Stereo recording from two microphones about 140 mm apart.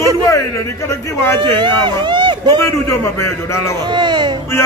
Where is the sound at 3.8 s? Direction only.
30° right (ahead or behind).